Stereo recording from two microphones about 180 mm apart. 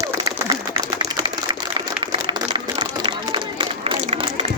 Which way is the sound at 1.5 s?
25° right (ahead or behind).